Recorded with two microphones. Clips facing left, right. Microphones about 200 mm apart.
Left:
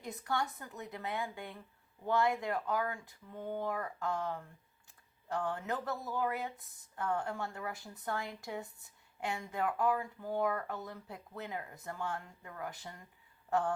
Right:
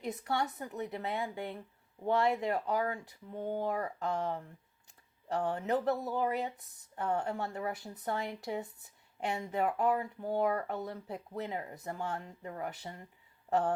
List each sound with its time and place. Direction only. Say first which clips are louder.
0.0 s speech: right 3 dB; 25° right (ahead or behind)